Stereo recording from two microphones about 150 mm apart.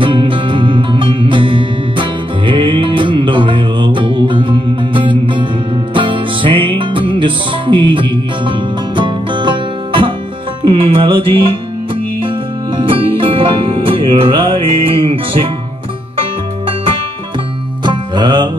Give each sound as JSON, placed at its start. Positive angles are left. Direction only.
{"t": 0.0, "sound": "music", "side_deg": -35}
{"t": 12.7, "sound": "music", "side_deg": -35}
{"t": 17.8, "sound": "music", "side_deg": -30}